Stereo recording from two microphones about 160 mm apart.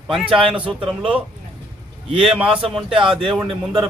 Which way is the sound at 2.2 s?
5° right (ahead or behind).